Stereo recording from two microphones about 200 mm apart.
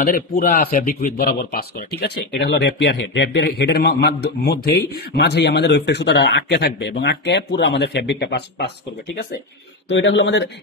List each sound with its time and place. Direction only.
0.0 s speech: 45° left (ahead or behind)
9.8 s speech: 65° left (ahead or behind)